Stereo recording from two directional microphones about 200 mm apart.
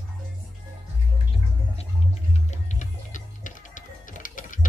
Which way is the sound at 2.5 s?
35° left (ahead or behind).